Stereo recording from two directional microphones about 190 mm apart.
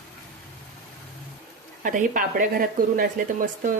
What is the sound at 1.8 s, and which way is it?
Speech, 45° right (ahead or behind).